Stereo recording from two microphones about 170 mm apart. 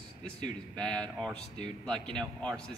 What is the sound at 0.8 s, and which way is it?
A man's voice, 5° left (ahead or behind).